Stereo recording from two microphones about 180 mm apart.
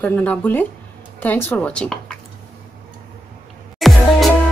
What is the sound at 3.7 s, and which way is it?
Music, centre (ahead or behind).